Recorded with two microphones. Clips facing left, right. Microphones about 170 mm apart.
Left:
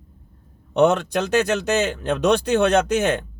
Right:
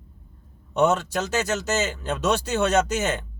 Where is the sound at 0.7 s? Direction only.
60° left (ahead or behind).